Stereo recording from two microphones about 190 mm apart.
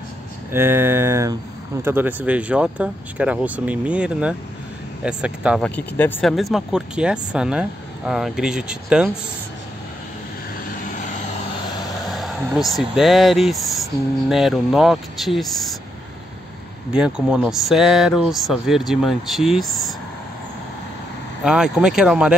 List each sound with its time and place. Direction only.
0.5 s speech: 10° right (ahead or behind)
5.6 s speech: 10° left (ahead or behind)
6.3 s speech: centre (ahead or behind)
11.0 s vehicle: 40° left (ahead or behind)
12.1 s speech: centre (ahead or behind)
16.9 s speech: 5° right (ahead or behind)
19.7 s a sound: centre (ahead or behind)
21.5 s speech: 5° right (ahead or behind)